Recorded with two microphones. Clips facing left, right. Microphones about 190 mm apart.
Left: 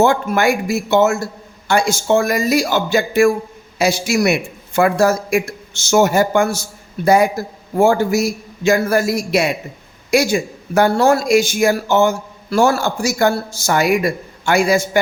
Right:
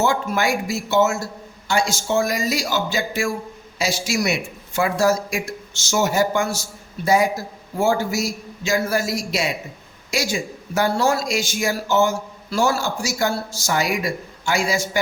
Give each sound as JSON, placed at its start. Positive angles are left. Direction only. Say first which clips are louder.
{"t": 0.0, "sound": "a man's voice", "louder": "left 6 dB", "side_deg": 55}